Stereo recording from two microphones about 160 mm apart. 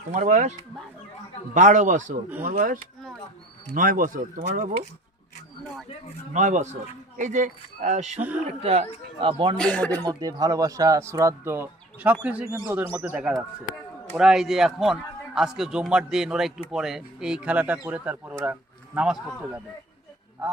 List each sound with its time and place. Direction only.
0.1 s speech: 50° right (ahead or behind)
1.5 s speech: 50° right (ahead or behind)
3.8 s speech: 60° right (ahead or behind)
6.3 s speech: 50° right (ahead or behind); by 9.6 s 35° right (ahead or behind)
9.6 s speech: 5° left (ahead or behind)
10.0 s a man's voice: 25° right (ahead or behind); by 19.6 s 5° right (ahead or behind)